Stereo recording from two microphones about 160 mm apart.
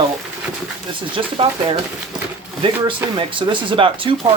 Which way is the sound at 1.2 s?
30° right (ahead or behind).